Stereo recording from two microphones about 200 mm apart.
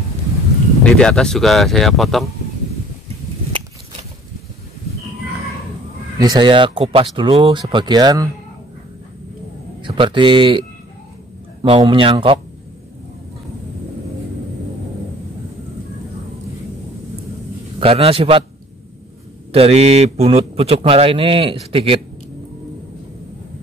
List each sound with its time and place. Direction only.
0.9 s speech: 5° left (ahead or behind)
6.1 s speech: 20° right (ahead or behind)
9.8 s speech: 25° right (ahead or behind)
11.6 s speech: 25° right (ahead or behind)
17.7 s speech: 30° right (ahead or behind)
19.5 s speech: 30° right (ahead or behind)